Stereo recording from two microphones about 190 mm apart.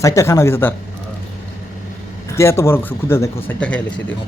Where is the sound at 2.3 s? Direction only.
15° left (ahead or behind).